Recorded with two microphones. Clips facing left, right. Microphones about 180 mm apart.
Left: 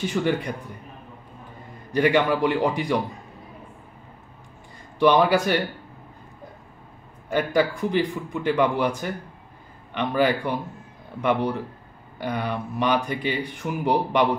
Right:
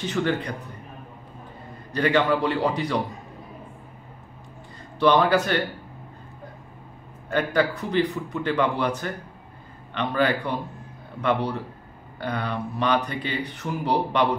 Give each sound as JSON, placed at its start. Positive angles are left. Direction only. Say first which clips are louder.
{"t": 0.0, "sound": "speech", "louder": "left 1 dB", "side_deg": 10}
{"t": 2.0, "sound": "speech", "louder": "left 1 dB", "side_deg": 15}
{"t": 4.9, "sound": "speech", "louder": "left 1 dB", "side_deg": 10}
{"t": 7.2, "sound": "speech", "louder": "left 1 dB", "side_deg": 10}